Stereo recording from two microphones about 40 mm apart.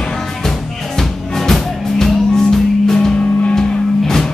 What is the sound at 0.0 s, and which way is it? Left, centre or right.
Music, centre.